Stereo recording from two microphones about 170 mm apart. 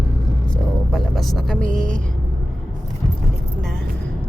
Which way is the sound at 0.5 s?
5° left (ahead or behind).